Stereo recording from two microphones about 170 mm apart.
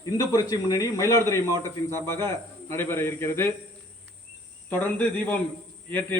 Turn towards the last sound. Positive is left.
turn(degrees=10)  # may be behind; listen again after turning